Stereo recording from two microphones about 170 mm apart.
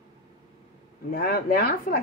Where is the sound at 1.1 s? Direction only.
65° left (ahead or behind).